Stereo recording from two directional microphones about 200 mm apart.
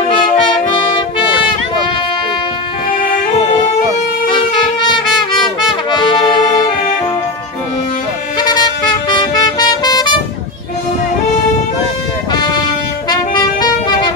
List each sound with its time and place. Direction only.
5.7 s brass instrument: 20° left (ahead or behind)
8.4 s music: 20° left (ahead or behind)
12.3 s music: 20° left (ahead or behind)